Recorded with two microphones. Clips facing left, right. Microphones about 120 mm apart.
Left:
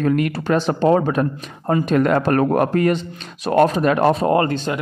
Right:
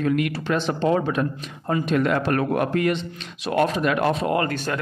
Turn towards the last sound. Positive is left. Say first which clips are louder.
# left 5 dB
turn(degrees=20)  # may be behind; listen again after turning